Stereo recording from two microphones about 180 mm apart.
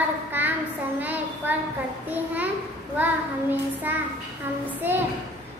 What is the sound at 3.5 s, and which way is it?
Child singing, 10° right (ahead or behind).